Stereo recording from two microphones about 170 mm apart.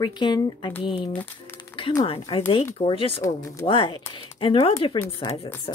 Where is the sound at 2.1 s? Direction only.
35° left (ahead or behind).